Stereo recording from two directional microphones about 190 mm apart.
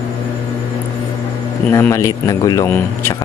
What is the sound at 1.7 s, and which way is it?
Speech, 15° left (ahead or behind).